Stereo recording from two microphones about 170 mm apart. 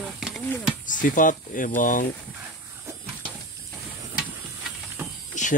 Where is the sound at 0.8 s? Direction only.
50° left (ahead or behind).